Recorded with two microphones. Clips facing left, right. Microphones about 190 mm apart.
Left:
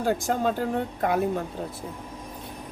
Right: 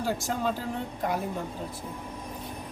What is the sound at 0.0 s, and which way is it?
Speech, 55° left (ahead or behind).